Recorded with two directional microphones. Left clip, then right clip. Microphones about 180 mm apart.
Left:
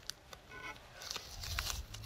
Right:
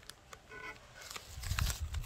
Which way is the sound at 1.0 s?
15° right (ahead or behind).